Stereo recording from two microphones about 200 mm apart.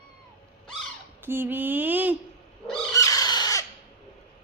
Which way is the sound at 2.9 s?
15° left (ahead or behind).